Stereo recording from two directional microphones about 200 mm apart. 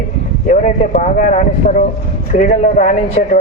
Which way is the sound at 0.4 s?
35° left (ahead or behind).